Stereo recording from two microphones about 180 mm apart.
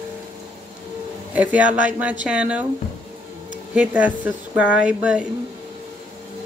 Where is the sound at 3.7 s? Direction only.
10° right (ahead or behind).